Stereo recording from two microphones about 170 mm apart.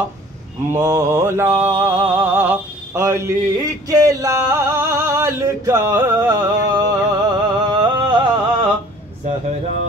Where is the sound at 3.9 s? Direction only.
20° right (ahead or behind).